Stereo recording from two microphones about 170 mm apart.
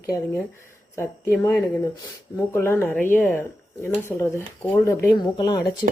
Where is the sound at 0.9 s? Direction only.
15° left (ahead or behind).